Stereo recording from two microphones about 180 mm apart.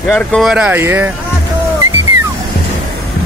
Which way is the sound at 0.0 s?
5° left (ahead or behind).